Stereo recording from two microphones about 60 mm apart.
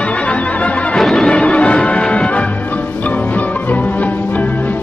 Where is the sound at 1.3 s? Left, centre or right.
Centre.